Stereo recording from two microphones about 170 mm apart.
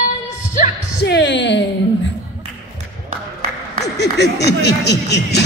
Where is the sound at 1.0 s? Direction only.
85° left.